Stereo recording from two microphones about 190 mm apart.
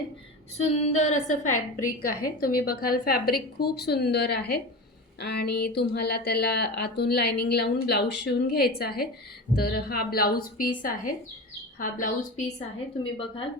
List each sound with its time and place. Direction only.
0.5 s a woman's voice: 35° left (ahead or behind)
13.1 s a woman's voice: 30° left (ahead or behind)